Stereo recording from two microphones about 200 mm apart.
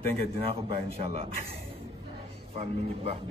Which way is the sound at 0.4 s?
30° right (ahead or behind).